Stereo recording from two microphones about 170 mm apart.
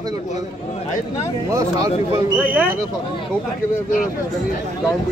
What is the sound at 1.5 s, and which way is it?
Speech, 20° right (ahead or behind).